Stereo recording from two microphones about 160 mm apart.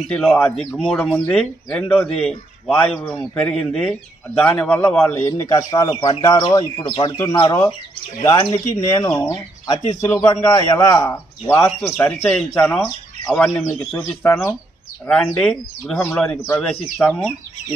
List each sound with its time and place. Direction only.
0.1 s speech: 5° left (ahead or behind)
5.5 s speech: 20° left (ahead or behind)
8.2 s speech: 20° left (ahead or behind)